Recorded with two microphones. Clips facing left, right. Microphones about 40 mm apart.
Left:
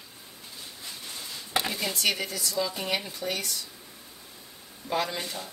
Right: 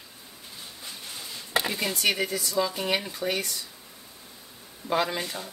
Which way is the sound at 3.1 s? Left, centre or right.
Right.